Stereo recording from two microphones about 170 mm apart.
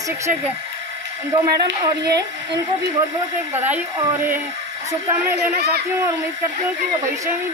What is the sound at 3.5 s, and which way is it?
Speech, 10° right (ahead or behind).